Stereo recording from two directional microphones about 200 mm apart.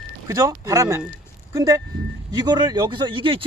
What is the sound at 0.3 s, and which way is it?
Speech, 15° right (ahead or behind).